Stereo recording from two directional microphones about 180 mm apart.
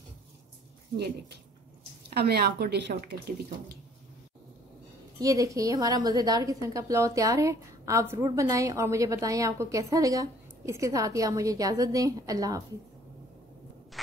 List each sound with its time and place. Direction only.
2.1 s speech: 60° right (ahead or behind)
5.2 s a woman's voice: 20° right (ahead or behind)